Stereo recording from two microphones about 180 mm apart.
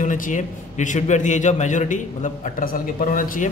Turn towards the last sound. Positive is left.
turn(degrees=50)  # may be behind; listen again after turning